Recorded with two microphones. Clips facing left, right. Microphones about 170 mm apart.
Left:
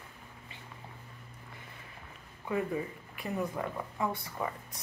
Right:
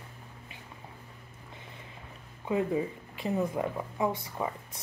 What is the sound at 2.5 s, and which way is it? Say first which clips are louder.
Speech: right 4 dB; 20° right (ahead or behind).